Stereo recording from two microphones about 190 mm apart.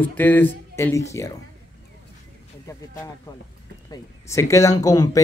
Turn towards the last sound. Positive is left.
turn(degrees=20)  # may be behind; listen again after turning